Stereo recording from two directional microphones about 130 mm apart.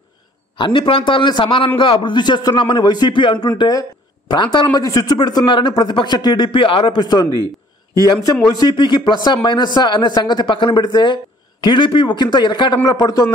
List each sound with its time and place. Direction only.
0.6 s a man's voice: 35° left (ahead or behind)